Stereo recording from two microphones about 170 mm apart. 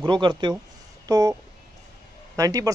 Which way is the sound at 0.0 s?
30° right (ahead or behind).